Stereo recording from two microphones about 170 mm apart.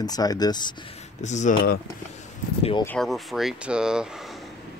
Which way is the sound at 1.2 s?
45° left (ahead or behind).